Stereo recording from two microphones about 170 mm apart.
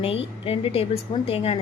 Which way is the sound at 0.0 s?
35° left (ahead or behind).